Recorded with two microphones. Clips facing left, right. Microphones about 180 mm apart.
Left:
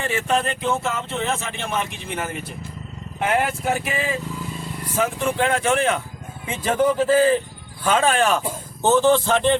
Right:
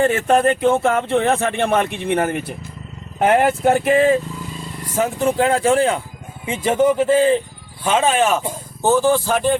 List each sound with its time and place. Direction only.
0.0 s speech: 50° right (ahead or behind)
3.2 s speech: 45° right (ahead or behind)
4.9 s speech: 35° right (ahead or behind); by 9.6 s 10° right (ahead or behind)